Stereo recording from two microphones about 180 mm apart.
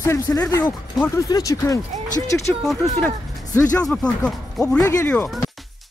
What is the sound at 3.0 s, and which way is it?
Speech, 15° left (ahead or behind).